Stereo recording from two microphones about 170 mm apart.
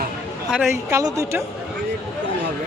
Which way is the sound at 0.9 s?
20° right (ahead or behind).